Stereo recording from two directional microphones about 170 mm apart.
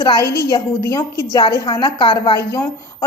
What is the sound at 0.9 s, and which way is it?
A woman's voice, 20° left (ahead or behind).